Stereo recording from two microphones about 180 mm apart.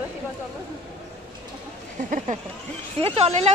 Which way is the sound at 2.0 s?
45° right (ahead or behind).